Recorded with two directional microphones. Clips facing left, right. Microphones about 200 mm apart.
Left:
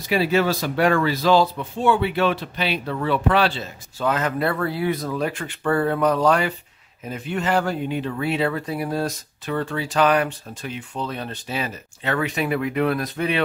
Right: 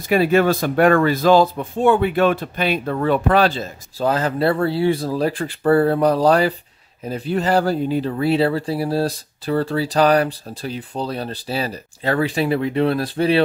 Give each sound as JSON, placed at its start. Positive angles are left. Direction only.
{"t": 0.1, "sound": "speech", "side_deg": -50}